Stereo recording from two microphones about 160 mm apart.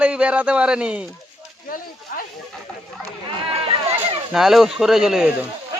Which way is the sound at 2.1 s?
65° left (ahead or behind).